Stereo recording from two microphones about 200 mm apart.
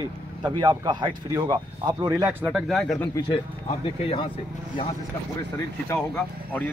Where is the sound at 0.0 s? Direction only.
20° right (ahead or behind).